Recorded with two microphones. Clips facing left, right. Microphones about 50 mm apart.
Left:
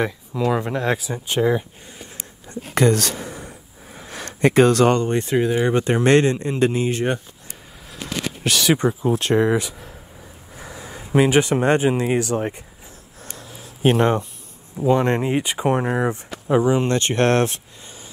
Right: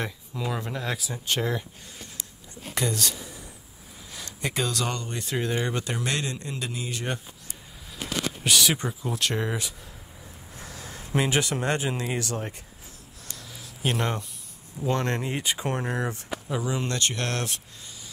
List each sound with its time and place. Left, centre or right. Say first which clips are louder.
0.5 s speech: left 9 dB; centre
2.7 s a sound: left 11 dB; left
5.4 s speech: left 6 dB; centre
5.7 s speech: left 13 dB; left
8.5 s speech: left 5 dB; centre
8.7 s speech: left 11 dB; left
10.5 s speech: left 6 dB; centre
13.2 s a sound: left 5 dB; left
14.9 s speech: left 9 dB; centre
16.4 s speech: left 12 dB; left